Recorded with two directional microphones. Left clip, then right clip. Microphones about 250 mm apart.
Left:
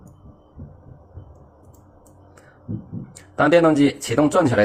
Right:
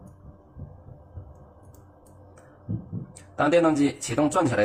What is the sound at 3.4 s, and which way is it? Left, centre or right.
Speech, left.